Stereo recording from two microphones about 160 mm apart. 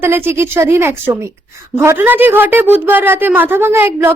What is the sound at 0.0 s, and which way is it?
A woman's voice, 15° right (ahead or behind).